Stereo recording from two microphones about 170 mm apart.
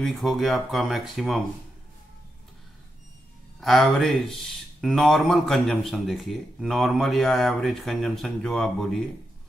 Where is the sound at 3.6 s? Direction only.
Centre (ahead or behind).